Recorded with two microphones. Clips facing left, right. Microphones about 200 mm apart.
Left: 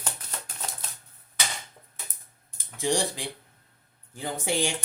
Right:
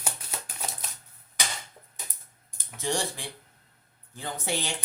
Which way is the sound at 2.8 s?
15° left (ahead or behind).